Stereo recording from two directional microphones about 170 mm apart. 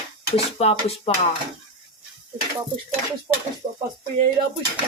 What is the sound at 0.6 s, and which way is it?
Speech, 35° left (ahead or behind).